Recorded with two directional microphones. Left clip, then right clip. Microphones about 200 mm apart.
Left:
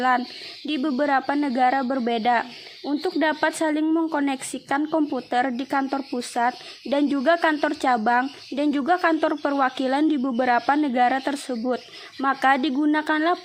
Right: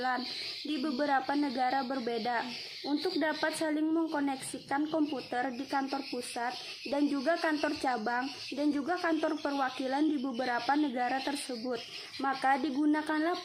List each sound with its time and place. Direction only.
0.7 s speech: 45° left (ahead or behind)